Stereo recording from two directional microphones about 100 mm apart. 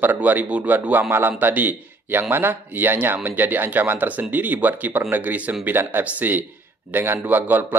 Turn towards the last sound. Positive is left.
turn(degrees=-20)  # may be behind; listen again after turning